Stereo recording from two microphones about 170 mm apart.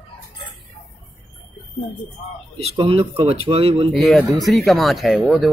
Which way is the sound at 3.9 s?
Centre (ahead or behind).